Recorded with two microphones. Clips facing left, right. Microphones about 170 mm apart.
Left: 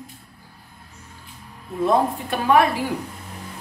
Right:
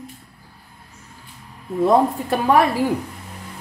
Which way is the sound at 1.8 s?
40° right (ahead or behind).